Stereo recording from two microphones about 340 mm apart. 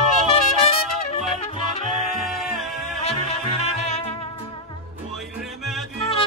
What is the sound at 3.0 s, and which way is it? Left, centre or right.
Music, centre.